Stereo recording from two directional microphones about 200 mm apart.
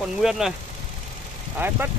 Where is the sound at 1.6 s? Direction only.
10° right (ahead or behind).